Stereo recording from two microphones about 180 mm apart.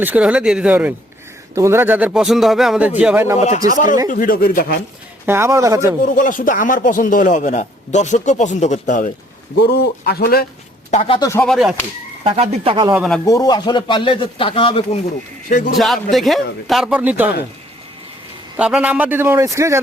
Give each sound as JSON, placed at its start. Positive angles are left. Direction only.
{"t": 0.0, "sound": "speech", "side_deg": -10}
{"t": 3.3, "sound": "speech", "side_deg": 35}
{"t": 3.7, "sound": "speech", "side_deg": 45}
{"t": 5.2, "sound": "speech", "side_deg": -15}
{"t": 6.1, "sound": "speech", "side_deg": 45}
{"t": 9.6, "sound": "a man's voice", "side_deg": 60}
{"t": 10.9, "sound": "speech", "side_deg": 40}
{"t": 11.2, "sound": "speech", "side_deg": 15}
{"t": 11.4, "sound": "speech", "side_deg": 0}
{"t": 12.2, "sound": "speech", "side_deg": -35}
{"t": 13.2, "sound": "speech", "side_deg": 20}
{"t": 15.4, "sound": "speech", "side_deg": 45}
{"t": 15.7, "sound": "speech", "side_deg": 0}
{"t": 18.5, "sound": "speech", "side_deg": -5}